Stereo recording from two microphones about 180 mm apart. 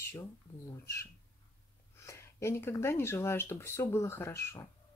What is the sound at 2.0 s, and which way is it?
Speech, 15° left (ahead or behind).